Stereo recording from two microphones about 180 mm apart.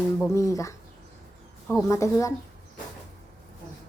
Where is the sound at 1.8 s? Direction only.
15° left (ahead or behind).